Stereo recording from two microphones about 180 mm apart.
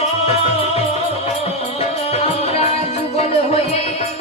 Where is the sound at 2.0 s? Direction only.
35° left (ahead or behind).